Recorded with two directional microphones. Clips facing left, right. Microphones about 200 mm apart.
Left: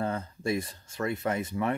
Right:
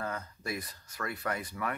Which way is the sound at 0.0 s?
30° left (ahead or behind).